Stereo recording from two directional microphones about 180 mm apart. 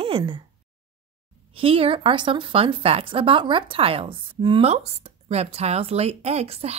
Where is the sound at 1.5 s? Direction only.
30° right (ahead or behind).